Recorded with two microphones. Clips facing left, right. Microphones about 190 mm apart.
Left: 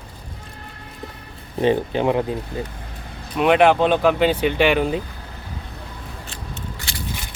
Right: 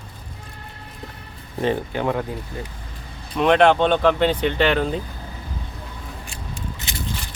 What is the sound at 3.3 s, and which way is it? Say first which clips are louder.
Speech: left 1 dB; 5° left (ahead or behind).